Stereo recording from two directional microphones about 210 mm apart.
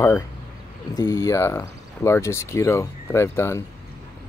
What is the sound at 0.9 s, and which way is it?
Speech, 20° left (ahead or behind).